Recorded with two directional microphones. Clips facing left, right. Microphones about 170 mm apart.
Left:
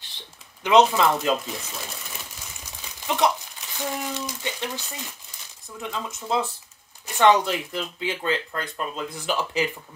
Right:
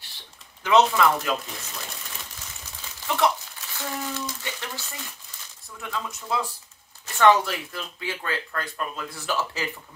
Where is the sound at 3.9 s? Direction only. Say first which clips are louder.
Right 1 dB; 15° left (ahead or behind).